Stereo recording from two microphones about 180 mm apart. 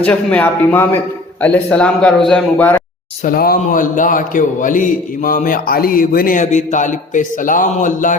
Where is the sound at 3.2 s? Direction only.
55° left (ahead or behind).